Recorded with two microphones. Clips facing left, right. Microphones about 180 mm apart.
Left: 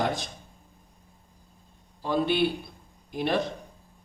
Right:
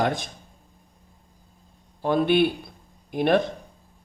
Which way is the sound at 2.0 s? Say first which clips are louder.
Right 5 dB; 55° right (ahead or behind).